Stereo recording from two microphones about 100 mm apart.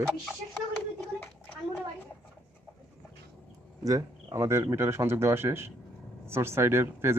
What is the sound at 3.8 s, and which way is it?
Speech, 35° right (ahead or behind).